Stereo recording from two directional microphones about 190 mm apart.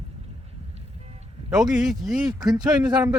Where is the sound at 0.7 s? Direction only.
35° right (ahead or behind).